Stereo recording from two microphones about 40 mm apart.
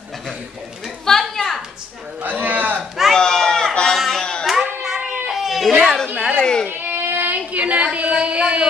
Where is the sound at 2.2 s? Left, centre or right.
Right.